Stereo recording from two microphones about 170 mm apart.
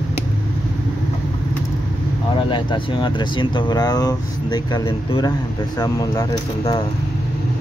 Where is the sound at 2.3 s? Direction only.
30° left (ahead or behind).